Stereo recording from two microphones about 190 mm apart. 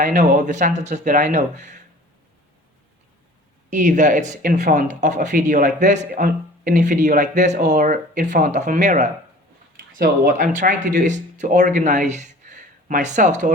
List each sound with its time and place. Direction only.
0.0 s speech: 40° right (ahead or behind)
3.7 s speech: 40° right (ahead or behind)
6.1 s speech: 50° right (ahead or behind)